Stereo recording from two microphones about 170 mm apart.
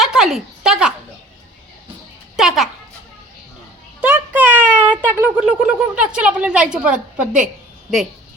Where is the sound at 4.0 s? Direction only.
10° right (ahead or behind).